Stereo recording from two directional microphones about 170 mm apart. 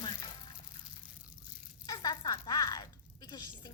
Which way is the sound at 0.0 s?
25° left (ahead or behind).